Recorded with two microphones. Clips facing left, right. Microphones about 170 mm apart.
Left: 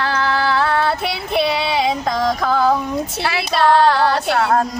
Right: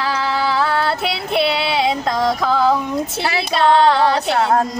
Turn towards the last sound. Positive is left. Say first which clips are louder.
# even
turn(degrees=-25)  # may be behind; listen again after turning